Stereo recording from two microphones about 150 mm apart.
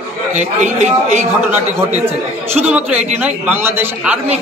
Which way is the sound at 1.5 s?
10° right (ahead or behind).